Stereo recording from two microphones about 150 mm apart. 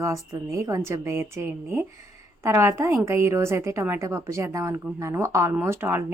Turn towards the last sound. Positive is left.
turn(degrees=-15)  # may be behind; listen again after turning